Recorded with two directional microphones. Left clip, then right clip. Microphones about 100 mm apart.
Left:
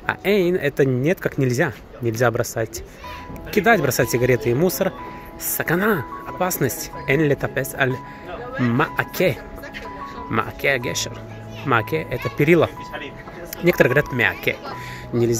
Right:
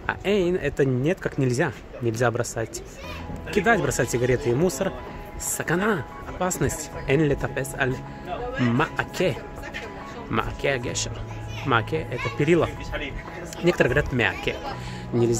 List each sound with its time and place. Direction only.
0.0 s speech: 30° left (ahead or behind)